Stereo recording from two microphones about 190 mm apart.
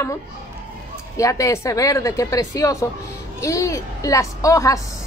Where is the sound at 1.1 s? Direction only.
15° left (ahead or behind).